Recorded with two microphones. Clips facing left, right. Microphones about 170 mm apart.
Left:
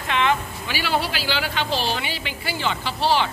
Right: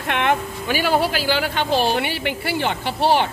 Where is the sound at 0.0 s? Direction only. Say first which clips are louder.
Right 1 dB; 55° right (ahead or behind).